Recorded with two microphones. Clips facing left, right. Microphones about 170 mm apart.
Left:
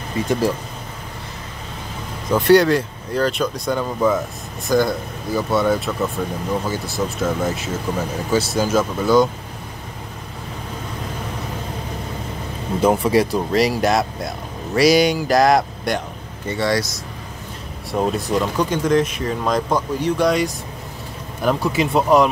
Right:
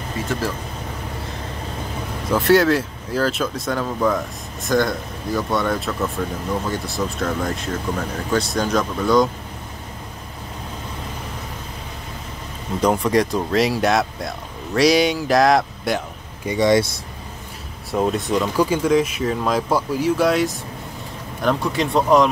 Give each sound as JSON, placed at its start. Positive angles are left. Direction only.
{"t": 2.3, "sound": "speech", "side_deg": 0}
{"t": 12.8, "sound": "speech", "side_deg": 5}
{"t": 16.4, "sound": "speech", "side_deg": -20}
{"t": 17.9, "sound": "speech", "side_deg": 0}